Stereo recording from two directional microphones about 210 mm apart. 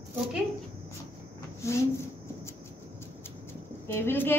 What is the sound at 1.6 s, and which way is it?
Speech, 15° left (ahead or behind).